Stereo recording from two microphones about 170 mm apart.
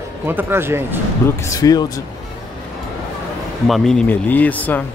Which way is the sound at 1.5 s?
20° left (ahead or behind).